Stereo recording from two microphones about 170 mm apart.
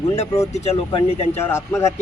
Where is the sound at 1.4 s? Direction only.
15° left (ahead or behind).